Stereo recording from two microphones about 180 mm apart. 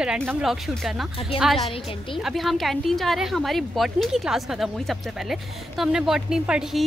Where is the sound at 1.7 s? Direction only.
30° left (ahead or behind).